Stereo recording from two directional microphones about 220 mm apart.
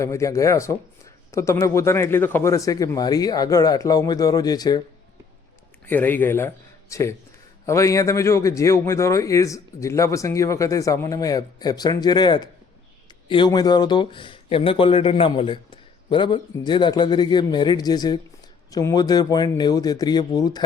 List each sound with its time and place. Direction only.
0.0 s a man's voice: 15° left (ahead or behind)
5.8 s a man's voice: 10° left (ahead or behind)